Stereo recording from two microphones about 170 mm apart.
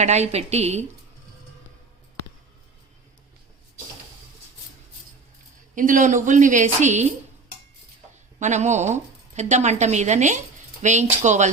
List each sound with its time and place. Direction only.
0.0 s a woman's voice: 40° right (ahead or behind)
5.7 s speech: 50° right (ahead or behind)
8.4 s speech: 45° right (ahead or behind)